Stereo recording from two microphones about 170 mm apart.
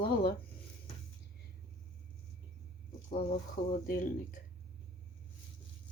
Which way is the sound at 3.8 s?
55° left (ahead or behind).